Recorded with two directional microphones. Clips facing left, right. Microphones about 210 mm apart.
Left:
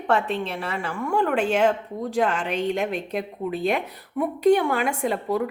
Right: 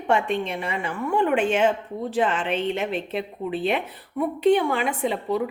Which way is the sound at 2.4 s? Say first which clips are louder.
Even; 40° left (ahead or behind).